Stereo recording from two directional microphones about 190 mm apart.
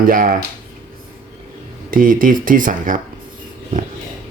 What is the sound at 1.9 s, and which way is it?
Speech, 45° right (ahead or behind).